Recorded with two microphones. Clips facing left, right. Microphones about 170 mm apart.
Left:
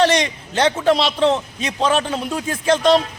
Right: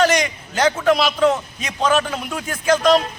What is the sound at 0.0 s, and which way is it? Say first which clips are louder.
A man's voice: left 1 dB; 30° left (ahead or behind).